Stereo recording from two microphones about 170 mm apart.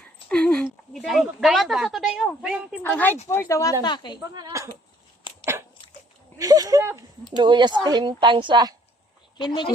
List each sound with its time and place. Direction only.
0.3 s a woman's voice: 5° left (ahead or behind)
2.8 s a woman's voice: 10° left (ahead or behind)
4.4 s a woman's voice: 20° right (ahead or behind)
5.3 s dog: 30° left (ahead or behind)
6.4 s a woman's voice: 20° right (ahead or behind)